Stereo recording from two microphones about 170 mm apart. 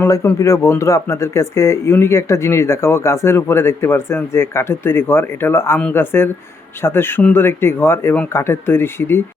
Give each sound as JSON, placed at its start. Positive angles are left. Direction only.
{"t": 0.0, "sound": "speech", "side_deg": 15}